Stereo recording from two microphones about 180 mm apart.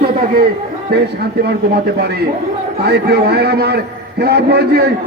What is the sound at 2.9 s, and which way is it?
A man's voice, 65° right (ahead or behind).